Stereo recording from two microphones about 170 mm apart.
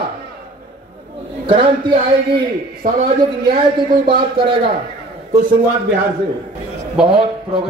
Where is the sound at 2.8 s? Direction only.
55° right (ahead or behind).